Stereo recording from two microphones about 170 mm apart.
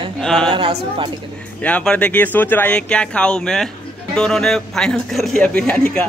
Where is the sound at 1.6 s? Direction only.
5° left (ahead or behind).